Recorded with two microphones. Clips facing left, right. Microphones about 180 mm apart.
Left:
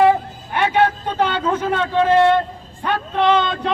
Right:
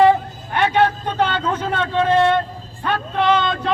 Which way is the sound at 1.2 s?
10° left (ahead or behind).